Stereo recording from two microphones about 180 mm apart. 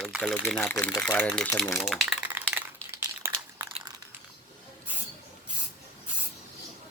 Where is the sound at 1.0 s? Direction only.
10° left (ahead or behind).